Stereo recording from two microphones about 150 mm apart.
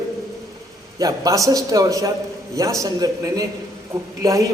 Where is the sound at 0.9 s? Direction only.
25° right (ahead or behind).